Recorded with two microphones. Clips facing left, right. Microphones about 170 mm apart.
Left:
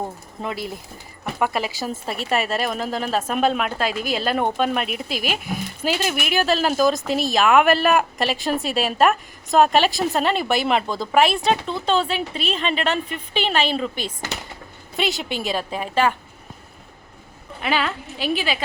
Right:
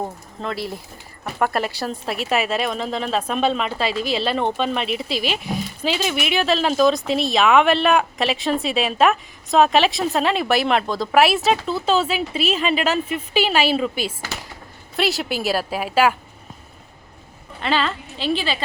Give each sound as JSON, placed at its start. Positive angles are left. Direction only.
{"t": 0.4, "sound": "a woman's voice", "side_deg": 0}
{"t": 5.0, "sound": "speech", "side_deg": 50}
{"t": 5.8, "sound": "a woman's voice", "side_deg": 5}
{"t": 17.6, "sound": "a woman's voice", "side_deg": 10}